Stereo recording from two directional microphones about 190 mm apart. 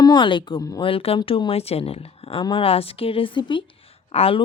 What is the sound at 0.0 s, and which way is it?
Speech, 25° left (ahead or behind).